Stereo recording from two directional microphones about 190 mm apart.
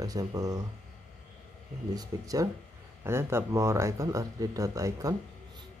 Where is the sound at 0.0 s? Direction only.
20° right (ahead or behind).